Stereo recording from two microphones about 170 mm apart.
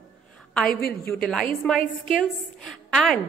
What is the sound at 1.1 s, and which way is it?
A woman's voice, 5° left (ahead or behind).